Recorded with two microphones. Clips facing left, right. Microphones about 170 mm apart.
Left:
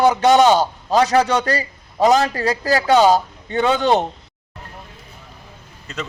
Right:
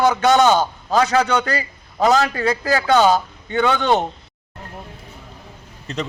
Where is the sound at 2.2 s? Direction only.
35° left (ahead or behind).